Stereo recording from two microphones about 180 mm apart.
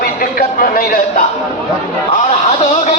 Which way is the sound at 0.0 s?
55° left (ahead or behind).